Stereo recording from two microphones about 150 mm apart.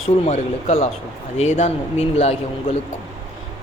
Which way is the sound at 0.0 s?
45° left (ahead or behind).